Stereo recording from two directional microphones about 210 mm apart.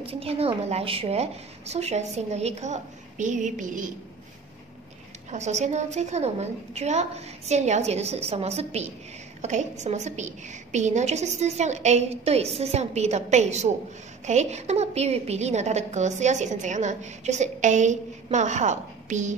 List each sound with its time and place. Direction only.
0.0 s a woman's voice: 30° right (ahead or behind)
5.3 s a woman's voice: 35° right (ahead or behind)